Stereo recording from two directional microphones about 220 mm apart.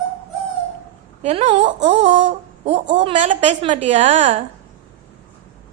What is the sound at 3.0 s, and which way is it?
Speech, 30° right (ahead or behind).